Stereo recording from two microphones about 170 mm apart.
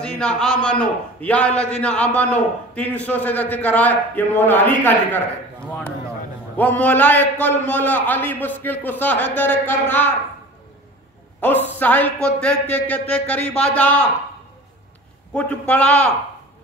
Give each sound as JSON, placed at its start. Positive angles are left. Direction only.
{"t": 0.0, "sound": "a man's voice", "side_deg": 5}
{"t": 6.5, "sound": "a man's voice", "side_deg": 10}
{"t": 11.4, "sound": "a man's voice", "side_deg": 10}
{"t": 15.3, "sound": "a man's voice", "side_deg": 10}